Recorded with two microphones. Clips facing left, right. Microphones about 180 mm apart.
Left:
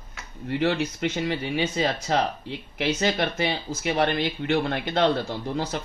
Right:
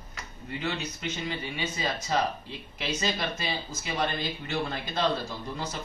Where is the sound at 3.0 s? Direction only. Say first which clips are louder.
Left 6 dB; 65° left (ahead or behind).